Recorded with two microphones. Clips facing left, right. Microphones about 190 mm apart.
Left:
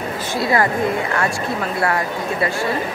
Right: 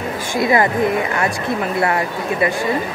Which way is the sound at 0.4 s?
20° right (ahead or behind).